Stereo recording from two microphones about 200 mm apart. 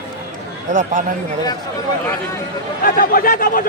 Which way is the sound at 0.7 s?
40° right (ahead or behind).